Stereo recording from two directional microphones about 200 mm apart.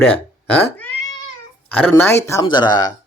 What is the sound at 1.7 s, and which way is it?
Speech, 10° left (ahead or behind).